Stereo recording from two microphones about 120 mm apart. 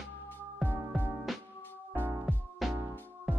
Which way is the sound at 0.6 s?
15° right (ahead or behind).